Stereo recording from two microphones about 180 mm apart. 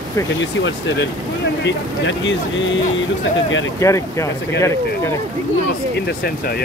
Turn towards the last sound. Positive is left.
turn(degrees=15)  # may be behind; listen again after turning